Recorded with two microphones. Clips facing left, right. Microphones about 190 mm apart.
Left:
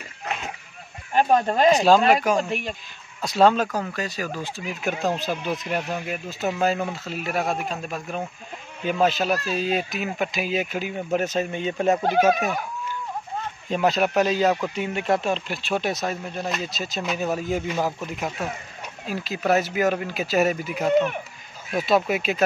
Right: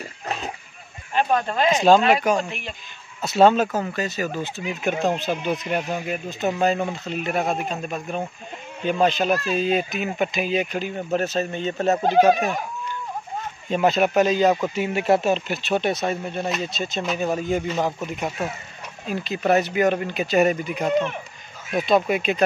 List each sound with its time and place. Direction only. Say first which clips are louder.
1.1 s speech: left 2 dB; 40° left (ahead or behind)
1.7 s speech: right 1 dB; centre (ahead or behind)
3.2 s speech: right 2 dB; 5° right (ahead or behind)
13.7 s speech: right 2 dB; centre (ahead or behind)